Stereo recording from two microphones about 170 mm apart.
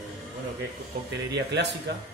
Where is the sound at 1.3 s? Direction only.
85° right.